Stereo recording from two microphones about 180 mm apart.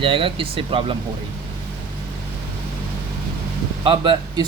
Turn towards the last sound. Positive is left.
turn(degrees=-25)  # may be behind; listen again after turning